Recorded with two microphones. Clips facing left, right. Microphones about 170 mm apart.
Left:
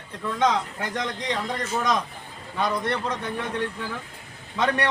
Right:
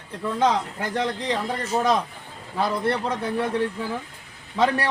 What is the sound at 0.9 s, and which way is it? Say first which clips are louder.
A man's voice: right 4 dB; 35° right (ahead or behind).